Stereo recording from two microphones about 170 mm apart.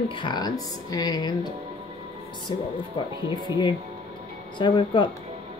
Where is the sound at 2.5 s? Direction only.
25° left (ahead or behind).